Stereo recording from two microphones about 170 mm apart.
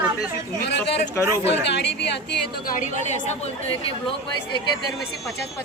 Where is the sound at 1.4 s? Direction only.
90° left.